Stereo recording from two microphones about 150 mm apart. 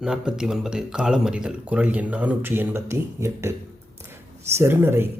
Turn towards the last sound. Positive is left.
turn(degrees=-15)  # may be behind; listen again after turning